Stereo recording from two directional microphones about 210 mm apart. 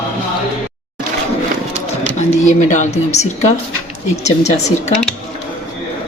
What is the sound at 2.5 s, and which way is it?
A woman's voice, 35° left (ahead or behind).